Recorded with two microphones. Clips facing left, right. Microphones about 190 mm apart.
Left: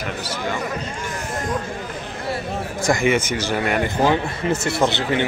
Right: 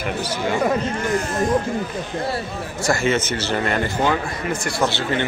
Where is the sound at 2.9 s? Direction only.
15° left (ahead or behind).